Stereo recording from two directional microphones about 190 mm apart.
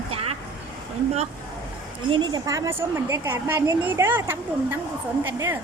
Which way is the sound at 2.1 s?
25° right (ahead or behind).